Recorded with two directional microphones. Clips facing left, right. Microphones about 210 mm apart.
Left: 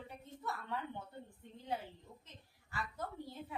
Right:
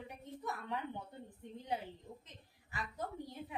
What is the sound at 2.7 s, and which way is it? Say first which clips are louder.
Speech: right 1 dB; 15° right (ahead or behind).